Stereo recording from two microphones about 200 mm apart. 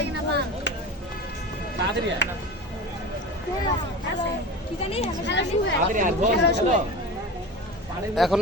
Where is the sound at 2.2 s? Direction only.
60° left (ahead or behind).